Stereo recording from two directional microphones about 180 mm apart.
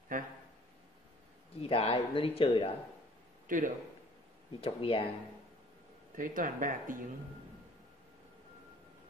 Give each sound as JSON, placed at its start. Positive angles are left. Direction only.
{"t": 0.1, "sound": "a sound", "side_deg": -50}
{"t": 1.6, "sound": "speech", "side_deg": 30}
{"t": 3.4, "sound": "speech", "side_deg": -50}
{"t": 4.6, "sound": "speech", "side_deg": 30}
{"t": 6.1, "sound": "speech", "side_deg": -50}